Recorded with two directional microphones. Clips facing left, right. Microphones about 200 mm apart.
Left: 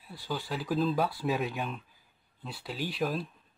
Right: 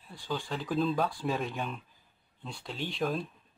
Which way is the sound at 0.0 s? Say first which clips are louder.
Even; 10° left (ahead or behind).